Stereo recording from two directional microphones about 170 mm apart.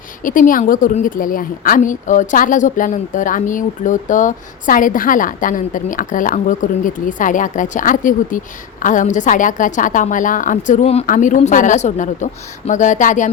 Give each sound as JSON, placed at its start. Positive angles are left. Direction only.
{"t": 0.3, "sound": "a woman's voice", "side_deg": 50}